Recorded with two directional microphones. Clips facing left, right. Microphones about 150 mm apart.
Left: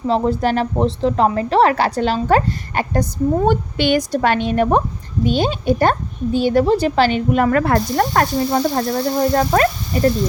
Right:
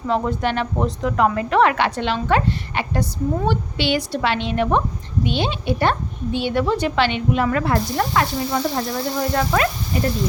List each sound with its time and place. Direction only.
0.1 s a woman's voice: 35° left (ahead or behind)